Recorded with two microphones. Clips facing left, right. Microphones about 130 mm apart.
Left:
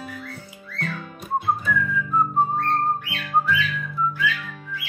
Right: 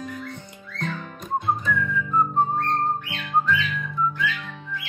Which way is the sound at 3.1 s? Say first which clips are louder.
Left 1 dB; 20° right (ahead or behind).